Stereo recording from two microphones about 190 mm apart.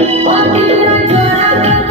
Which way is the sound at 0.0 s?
35° right (ahead or behind).